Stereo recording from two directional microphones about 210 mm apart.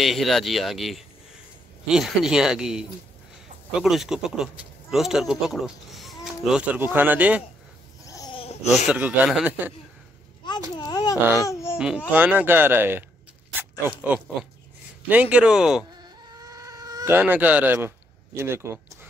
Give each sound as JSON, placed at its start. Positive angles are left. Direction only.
{"t": 0.0, "sound": "speech", "side_deg": 0}
{"t": 8.0, "sound": "a sound", "side_deg": 15}
{"t": 8.8, "sound": "speech", "side_deg": -5}
{"t": 10.8, "sound": "baby cry", "side_deg": 20}
{"t": 11.8, "sound": "speech", "side_deg": -5}
{"t": 15.0, "sound": "speech", "side_deg": -5}
{"t": 16.0, "sound": "a sound", "side_deg": -15}